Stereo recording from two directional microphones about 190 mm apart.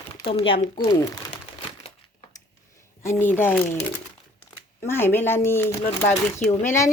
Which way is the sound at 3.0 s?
10° left (ahead or behind).